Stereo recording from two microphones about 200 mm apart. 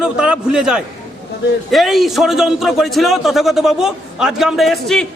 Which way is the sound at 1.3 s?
55° left (ahead or behind).